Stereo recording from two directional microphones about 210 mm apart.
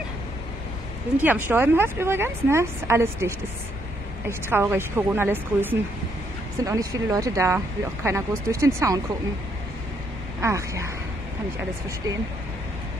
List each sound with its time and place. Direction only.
1.1 s a woman's voice: 10° right (ahead or behind)
10.4 s a woman's voice: 15° right (ahead or behind)